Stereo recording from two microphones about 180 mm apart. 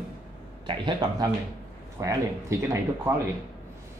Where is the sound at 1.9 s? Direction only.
15° right (ahead or behind).